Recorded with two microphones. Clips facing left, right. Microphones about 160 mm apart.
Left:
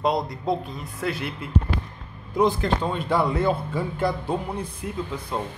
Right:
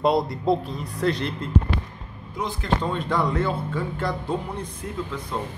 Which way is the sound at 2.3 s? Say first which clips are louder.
Left 9 dB; 50° left (ahead or behind).